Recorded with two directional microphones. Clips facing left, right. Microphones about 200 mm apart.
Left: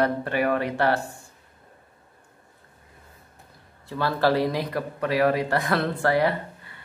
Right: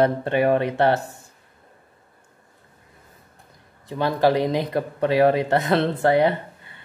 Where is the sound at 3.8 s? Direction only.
20° right (ahead or behind).